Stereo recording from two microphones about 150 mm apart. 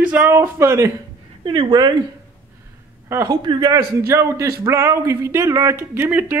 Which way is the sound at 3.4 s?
30° right (ahead or behind).